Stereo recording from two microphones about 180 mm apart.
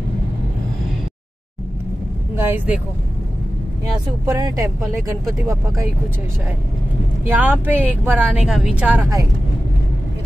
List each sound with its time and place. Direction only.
2.3 s speech: 10° right (ahead or behind)
4.3 s speech: 20° right (ahead or behind)
7.2 s speech: 10° right (ahead or behind)